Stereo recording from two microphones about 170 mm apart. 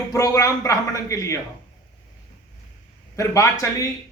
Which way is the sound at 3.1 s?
20° left (ahead or behind).